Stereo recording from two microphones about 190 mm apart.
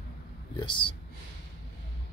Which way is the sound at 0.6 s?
25° left (ahead or behind).